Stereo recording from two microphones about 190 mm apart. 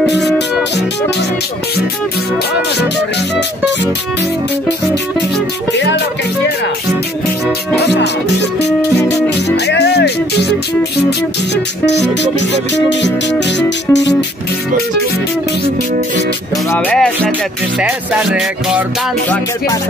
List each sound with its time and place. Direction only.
0.2 s music: centre (ahead or behind)
5.7 s music: 65° left (ahead or behind)
7.7 s music: 60° left (ahead or behind)
9.7 s music: 60° left (ahead or behind)
16.7 s speech: 5° left (ahead or behind)
17.7 s music: 5° right (ahead or behind)